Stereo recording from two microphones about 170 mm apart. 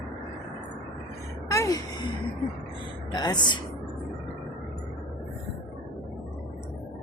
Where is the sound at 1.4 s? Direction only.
20° left (ahead or behind).